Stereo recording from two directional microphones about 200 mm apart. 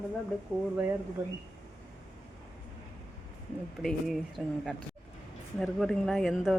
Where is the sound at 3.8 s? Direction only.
Centre (ahead or behind).